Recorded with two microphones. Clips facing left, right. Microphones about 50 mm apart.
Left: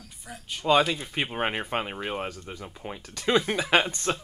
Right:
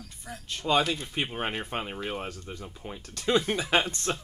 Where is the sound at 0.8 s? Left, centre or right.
Centre.